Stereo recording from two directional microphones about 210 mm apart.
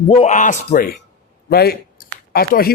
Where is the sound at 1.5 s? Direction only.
45° left (ahead or behind).